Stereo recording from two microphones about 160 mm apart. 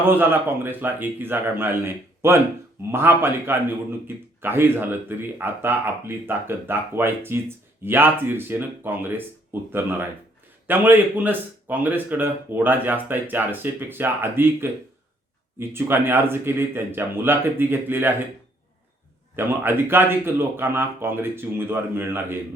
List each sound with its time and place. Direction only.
0.2 s speech: 15° right (ahead or behind)
19.4 s speech: 15° right (ahead or behind)